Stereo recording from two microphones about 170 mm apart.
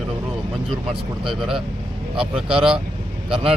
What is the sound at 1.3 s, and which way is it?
Speech, centre (ahead or behind).